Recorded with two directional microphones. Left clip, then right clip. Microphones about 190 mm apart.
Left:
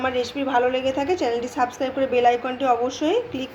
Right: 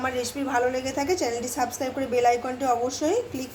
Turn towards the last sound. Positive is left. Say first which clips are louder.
# left 3 dB
turn(degrees=0)  # may be behind; listen again after turning